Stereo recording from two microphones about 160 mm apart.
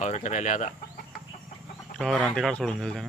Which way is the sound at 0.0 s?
50° left (ahead or behind).